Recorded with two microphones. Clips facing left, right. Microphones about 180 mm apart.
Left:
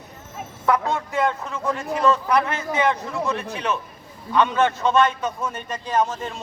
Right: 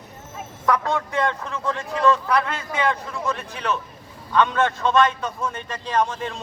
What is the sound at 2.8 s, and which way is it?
A man's voice, 15° left (ahead or behind).